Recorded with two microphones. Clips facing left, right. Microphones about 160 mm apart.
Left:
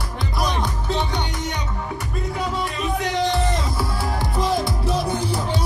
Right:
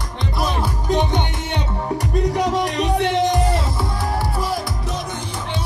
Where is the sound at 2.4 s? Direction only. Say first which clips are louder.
Right 6 dB; 90° right.